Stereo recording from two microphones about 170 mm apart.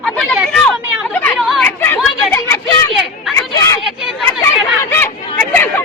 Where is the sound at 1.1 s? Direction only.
5° left (ahead or behind).